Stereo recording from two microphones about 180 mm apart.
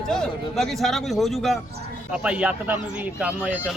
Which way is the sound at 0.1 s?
Centre (ahead or behind).